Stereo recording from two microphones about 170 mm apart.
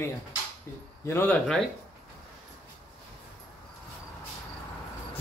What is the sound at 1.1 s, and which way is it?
Speech, 15° left (ahead or behind).